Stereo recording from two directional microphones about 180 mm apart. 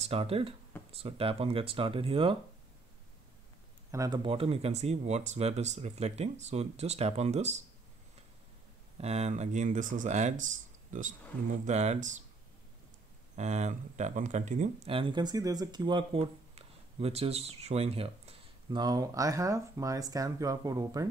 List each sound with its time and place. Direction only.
0.0 s speech: 35° right (ahead or behind)
3.9 s speech: 20° right (ahead or behind); by 7.5 s 40° right (ahead or behind)
8.9 s speech: 35° right (ahead or behind)
13.4 s speech: 40° right (ahead or behind)
18.8 s speech: 20° right (ahead or behind)